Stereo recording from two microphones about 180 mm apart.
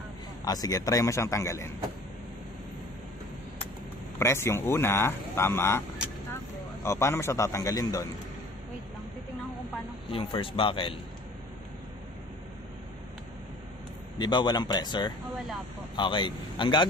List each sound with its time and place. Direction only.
0.5 s speech: 20° left (ahead or behind)
4.2 s speech: 15° left (ahead or behind)
10.1 s speech: 30° left (ahead or behind)
14.1 s speech: 25° left (ahead or behind)